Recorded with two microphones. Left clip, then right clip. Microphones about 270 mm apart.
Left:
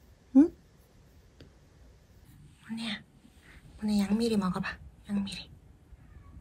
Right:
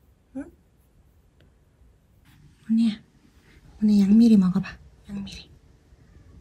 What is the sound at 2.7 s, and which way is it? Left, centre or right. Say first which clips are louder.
A woman's voice: right 11 dB; centre.